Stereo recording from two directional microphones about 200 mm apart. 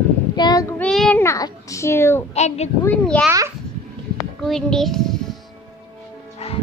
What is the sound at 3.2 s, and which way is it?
Music, 15° right (ahead or behind).